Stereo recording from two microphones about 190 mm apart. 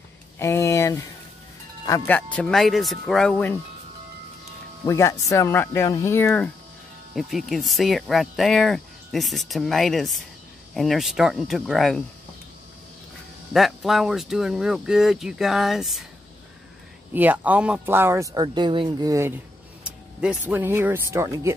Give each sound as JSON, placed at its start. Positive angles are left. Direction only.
{"t": 0.4, "sound": "speech", "side_deg": 15}
{"t": 4.8, "sound": "speech", "side_deg": 15}
{"t": 13.5, "sound": "speech", "side_deg": 0}
{"t": 17.1, "sound": "speech", "side_deg": -10}